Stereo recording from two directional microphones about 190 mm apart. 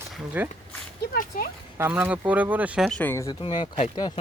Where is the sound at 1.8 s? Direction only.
10° right (ahead or behind); by 3.2 s 10° left (ahead or behind).